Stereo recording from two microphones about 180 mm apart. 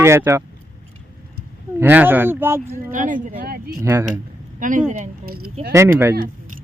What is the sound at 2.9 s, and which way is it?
Speech, 45° right (ahead or behind).